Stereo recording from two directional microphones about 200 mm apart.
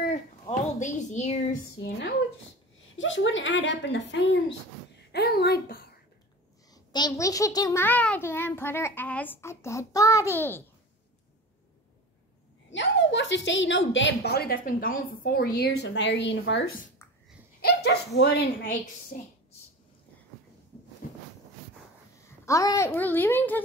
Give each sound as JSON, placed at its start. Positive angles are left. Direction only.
{"t": 0.0, "sound": "a sound", "side_deg": 40}
{"t": 3.0, "sound": "a woman's voice", "side_deg": 70}
{"t": 5.1, "sound": "a sound", "side_deg": 55}
{"t": 6.7, "sound": "a child's voice", "side_deg": 20}
{"t": 12.7, "sound": "a woman's voice", "side_deg": 65}
{"t": 17.6, "sound": "speech", "side_deg": 55}
{"t": 19.1, "sound": "a woman's voice", "side_deg": 40}
{"t": 22.4, "sound": "a child's voice", "side_deg": 15}